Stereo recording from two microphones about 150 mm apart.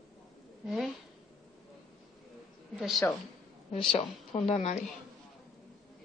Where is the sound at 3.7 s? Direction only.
40° left (ahead or behind).